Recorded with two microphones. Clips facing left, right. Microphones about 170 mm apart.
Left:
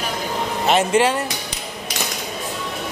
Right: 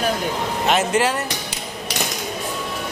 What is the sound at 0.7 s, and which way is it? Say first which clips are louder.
Speech: left 3 dB; centre (ahead or behind).